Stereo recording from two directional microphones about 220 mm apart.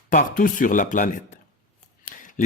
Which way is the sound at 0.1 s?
35° left (ahead or behind).